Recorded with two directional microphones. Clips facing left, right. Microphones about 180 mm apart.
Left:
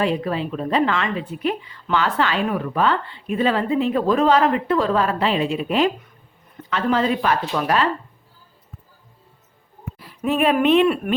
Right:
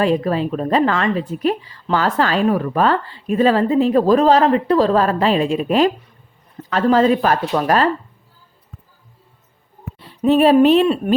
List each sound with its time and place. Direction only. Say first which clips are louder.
0.0 s a woman's voice: right 5 dB; 40° right (ahead or behind)
10.0 s speech: right 7 dB; 30° right (ahead or behind)